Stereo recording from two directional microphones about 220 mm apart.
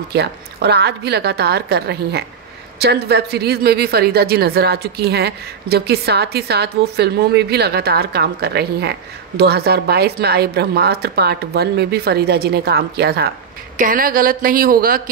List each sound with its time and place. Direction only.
0.1 s a woman's voice: 45° right (ahead or behind)